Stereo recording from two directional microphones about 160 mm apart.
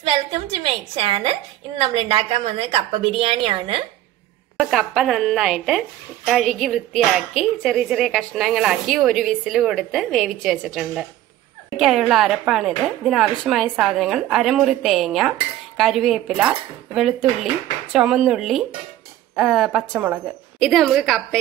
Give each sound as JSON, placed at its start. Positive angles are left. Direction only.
{"t": 0.1, "sound": "a woman's voice", "side_deg": -35}
{"t": 4.6, "sound": "a woman's voice", "side_deg": 0}